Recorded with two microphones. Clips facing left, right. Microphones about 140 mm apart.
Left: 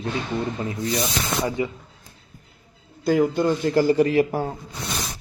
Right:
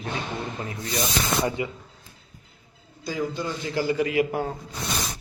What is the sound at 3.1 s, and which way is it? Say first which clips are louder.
A man's voice: left 9 dB; 55° left (ahead or behind).